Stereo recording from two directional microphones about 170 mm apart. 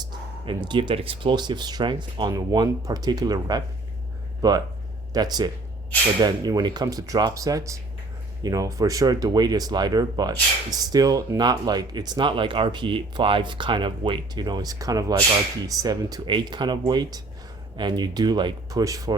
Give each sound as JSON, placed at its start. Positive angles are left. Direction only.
{"t": 0.0, "sound": "speech", "side_deg": -25}